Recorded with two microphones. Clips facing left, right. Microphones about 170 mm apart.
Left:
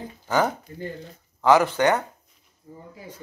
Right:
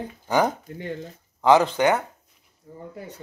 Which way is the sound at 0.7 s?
65° right (ahead or behind).